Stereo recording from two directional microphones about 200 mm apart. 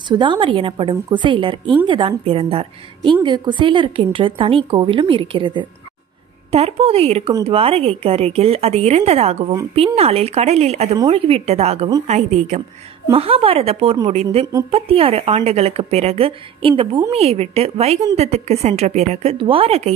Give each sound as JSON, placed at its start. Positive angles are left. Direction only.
{"t": 0.1, "sound": "a woman's voice", "side_deg": -25}